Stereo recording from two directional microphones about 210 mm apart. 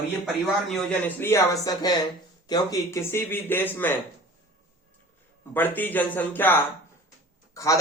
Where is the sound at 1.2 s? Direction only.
15° left (ahead or behind).